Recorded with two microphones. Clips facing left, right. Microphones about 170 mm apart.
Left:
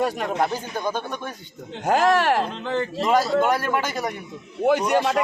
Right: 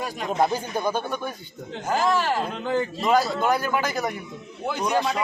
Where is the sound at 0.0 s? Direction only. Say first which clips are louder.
Left 7 dB; 65° left (ahead or behind).